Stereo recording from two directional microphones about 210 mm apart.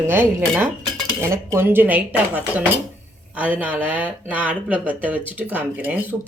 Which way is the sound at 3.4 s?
5° right (ahead or behind).